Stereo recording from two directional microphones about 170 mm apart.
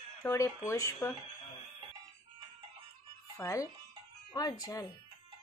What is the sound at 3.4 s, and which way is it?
A woman's voice, 15° left (ahead or behind).